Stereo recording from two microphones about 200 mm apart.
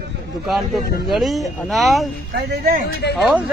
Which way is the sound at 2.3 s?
45° right (ahead or behind).